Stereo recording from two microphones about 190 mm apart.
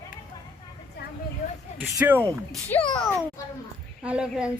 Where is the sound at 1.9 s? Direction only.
10° right (ahead or behind).